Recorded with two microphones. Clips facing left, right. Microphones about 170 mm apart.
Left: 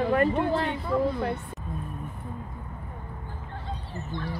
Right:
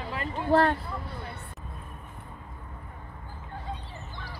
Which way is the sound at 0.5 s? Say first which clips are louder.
Right 5 dB; 70° right (ahead or behind).